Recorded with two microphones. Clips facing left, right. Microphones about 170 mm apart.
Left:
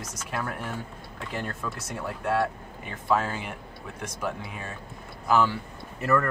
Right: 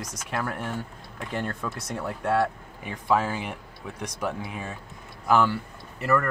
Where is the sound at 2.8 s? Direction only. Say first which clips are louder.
Right 2 dB; 15° right (ahead or behind).